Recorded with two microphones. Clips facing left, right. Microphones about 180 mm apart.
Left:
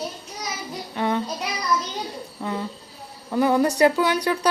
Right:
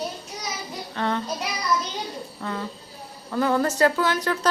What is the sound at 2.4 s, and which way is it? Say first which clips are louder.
Cricket: left 3 dB; 15° left (ahead or behind).